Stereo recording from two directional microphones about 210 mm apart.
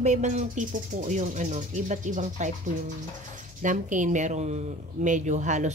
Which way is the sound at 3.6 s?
35° right (ahead or behind).